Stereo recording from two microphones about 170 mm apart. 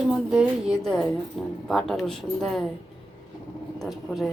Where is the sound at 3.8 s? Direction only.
Centre (ahead or behind).